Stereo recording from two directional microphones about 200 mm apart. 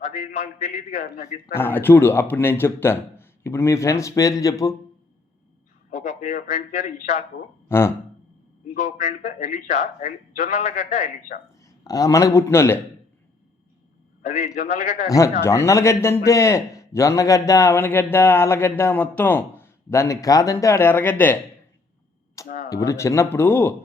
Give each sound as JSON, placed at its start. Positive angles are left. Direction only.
{"t": 0.0, "sound": "a man's voice", "side_deg": 40}
{"t": 1.5, "sound": "a man's voice", "side_deg": 10}
{"t": 5.9, "sound": "a man's voice", "side_deg": 40}
{"t": 7.7, "sound": "a man's voice", "side_deg": 10}
{"t": 8.7, "sound": "a man's voice", "side_deg": 35}
{"t": 11.6, "sound": "a man's voice", "side_deg": 20}
{"t": 14.2, "sound": "a man's voice", "side_deg": 40}
{"t": 15.1, "sound": "a man's voice", "side_deg": 15}
{"t": 22.4, "sound": "a sound", "side_deg": 45}
{"t": 22.7, "sound": "a man's voice", "side_deg": 15}